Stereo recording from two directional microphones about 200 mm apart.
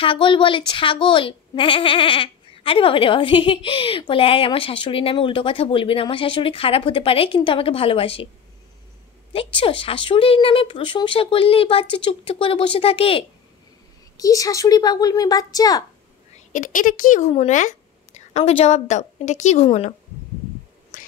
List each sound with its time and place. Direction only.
0.0 s a woman's voice: 25° left (ahead or behind)
9.3 s a woman's voice: 25° left (ahead or behind)
14.1 s a woman's voice: 15° left (ahead or behind)
16.3 s speech: 40° left (ahead or behind)